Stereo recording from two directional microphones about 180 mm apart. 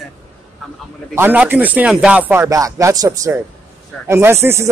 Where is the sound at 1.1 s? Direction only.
10° right (ahead or behind).